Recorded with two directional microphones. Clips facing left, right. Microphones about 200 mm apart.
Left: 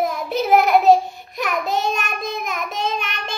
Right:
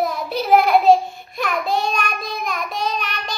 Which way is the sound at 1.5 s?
20° left (ahead or behind).